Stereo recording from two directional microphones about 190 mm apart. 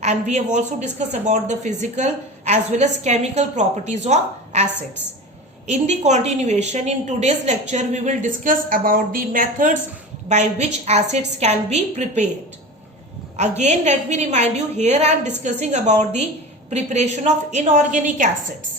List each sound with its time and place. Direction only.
0.0 s speech: 35° right (ahead or behind)
13.3 s speech: 35° right (ahead or behind)